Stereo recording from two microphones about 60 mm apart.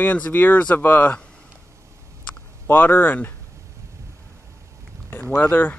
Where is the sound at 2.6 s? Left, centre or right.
Left.